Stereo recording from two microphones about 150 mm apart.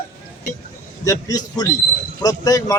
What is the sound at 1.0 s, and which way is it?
A man's voice, 20° left (ahead or behind).